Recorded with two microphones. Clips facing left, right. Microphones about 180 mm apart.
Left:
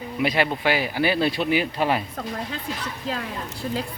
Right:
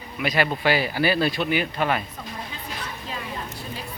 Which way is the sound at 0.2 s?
25° left (ahead or behind).